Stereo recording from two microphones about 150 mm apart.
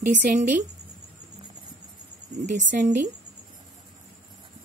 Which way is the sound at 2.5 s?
55° right (ahead or behind).